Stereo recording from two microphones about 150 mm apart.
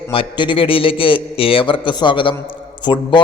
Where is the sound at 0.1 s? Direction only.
35° left (ahead or behind).